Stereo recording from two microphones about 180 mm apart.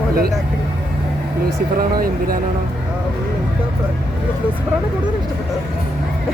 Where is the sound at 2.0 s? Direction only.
55° right (ahead or behind).